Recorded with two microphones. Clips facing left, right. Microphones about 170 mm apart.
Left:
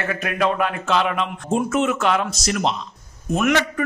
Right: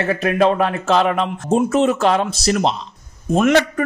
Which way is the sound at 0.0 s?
30° right (ahead or behind).